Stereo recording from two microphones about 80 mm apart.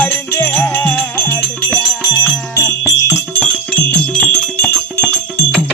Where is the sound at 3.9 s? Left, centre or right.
Centre.